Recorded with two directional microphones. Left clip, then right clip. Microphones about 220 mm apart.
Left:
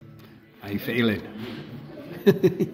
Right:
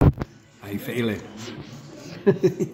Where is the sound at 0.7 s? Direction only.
5° right (ahead or behind).